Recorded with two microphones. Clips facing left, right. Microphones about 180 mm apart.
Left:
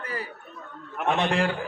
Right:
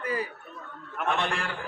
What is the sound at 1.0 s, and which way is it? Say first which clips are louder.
Speech: left 4 dB; 20° left (ahead or behind).